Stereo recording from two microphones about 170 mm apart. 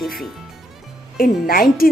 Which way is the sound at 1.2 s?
60° left (ahead or behind).